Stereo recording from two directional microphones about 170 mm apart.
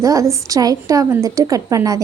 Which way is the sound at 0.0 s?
20° right (ahead or behind).